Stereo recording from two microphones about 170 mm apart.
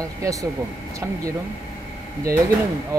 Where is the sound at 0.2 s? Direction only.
20° right (ahead or behind).